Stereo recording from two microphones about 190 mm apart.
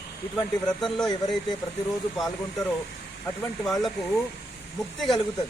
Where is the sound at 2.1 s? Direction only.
Centre (ahead or behind).